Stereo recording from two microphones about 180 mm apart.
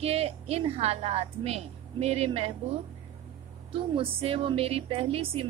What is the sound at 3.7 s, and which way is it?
A woman's voice, 30° right (ahead or behind).